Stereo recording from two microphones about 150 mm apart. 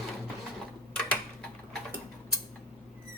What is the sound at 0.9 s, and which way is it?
Tick-tock, 5° left (ahead or behind).